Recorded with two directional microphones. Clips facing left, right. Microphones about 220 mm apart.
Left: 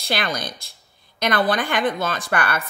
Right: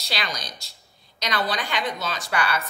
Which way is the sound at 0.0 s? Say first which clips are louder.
Left 7 dB; 55° left (ahead or behind).